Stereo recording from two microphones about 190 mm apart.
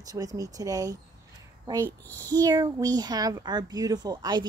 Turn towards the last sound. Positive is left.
turn(degrees=-20)  # may be behind; listen again after turning